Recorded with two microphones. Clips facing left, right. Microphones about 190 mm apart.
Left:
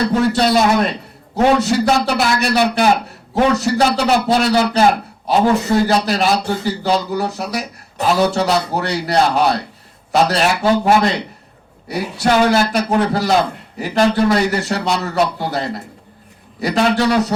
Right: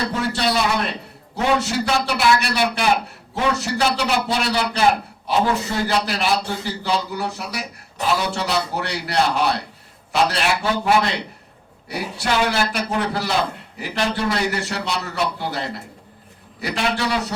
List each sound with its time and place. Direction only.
0.1 s a man's voice: 45° left (ahead or behind)
12.1 s a man's voice: 45° left (ahead or behind)